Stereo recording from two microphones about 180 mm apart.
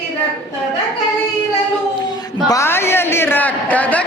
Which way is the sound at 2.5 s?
15° left (ahead or behind).